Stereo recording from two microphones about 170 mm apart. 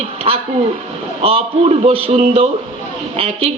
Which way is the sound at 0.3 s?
35° right (ahead or behind).